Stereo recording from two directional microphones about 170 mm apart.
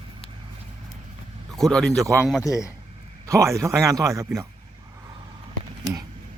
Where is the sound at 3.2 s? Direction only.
20° right (ahead or behind).